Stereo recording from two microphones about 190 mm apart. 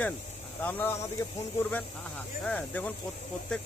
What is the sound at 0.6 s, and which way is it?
Speech, 10° left (ahead or behind).